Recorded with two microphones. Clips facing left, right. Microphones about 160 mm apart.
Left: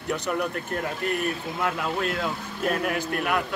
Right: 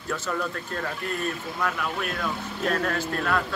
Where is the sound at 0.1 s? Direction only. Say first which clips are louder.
Left 2 dB; 20° left (ahead or behind).